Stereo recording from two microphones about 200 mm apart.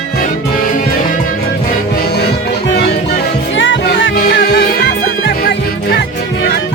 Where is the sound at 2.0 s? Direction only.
55° left (ahead or behind).